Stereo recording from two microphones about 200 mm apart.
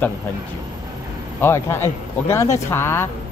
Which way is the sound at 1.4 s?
10° left (ahead or behind).